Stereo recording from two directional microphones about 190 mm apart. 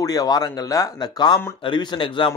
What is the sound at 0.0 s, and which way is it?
A man's voice, 20° left (ahead or behind).